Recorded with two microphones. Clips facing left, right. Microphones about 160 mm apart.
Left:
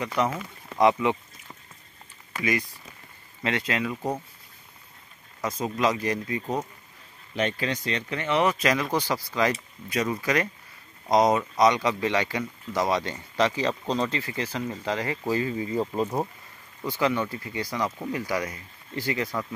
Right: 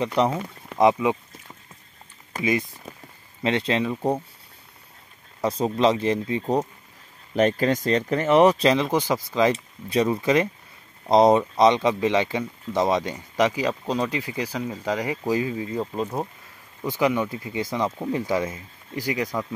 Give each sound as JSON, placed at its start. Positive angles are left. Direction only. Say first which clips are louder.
{"t": 0.0, "sound": "speech", "louder": "right 4 dB", "side_deg": -25}
{"t": 3.4, "sound": "speech", "louder": "right 5 dB", "side_deg": -25}
{"t": 5.4, "sound": "speech", "louder": "right 5 dB", "side_deg": -30}
{"t": 7.3, "sound": "speech", "louder": "right 7 dB", "side_deg": -45}
{"t": 15.5, "sound": "speech", "louder": "left 1 dB", "side_deg": 5}
{"t": 16.8, "sound": "speech", "louder": "right 3 dB", "side_deg": -15}